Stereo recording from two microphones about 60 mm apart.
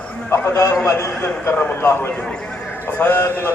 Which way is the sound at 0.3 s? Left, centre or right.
Left.